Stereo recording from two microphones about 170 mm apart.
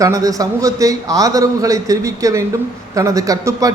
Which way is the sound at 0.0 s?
20° right (ahead or behind).